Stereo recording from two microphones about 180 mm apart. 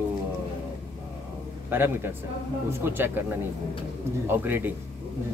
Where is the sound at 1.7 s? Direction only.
10° right (ahead or behind).